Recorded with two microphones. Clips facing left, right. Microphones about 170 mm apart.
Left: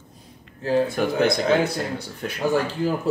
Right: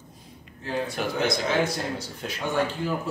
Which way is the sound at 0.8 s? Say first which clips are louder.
Left 6 dB; 55° left (ahead or behind).